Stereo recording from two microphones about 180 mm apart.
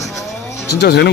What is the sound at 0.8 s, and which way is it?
Speech, 65° left (ahead or behind).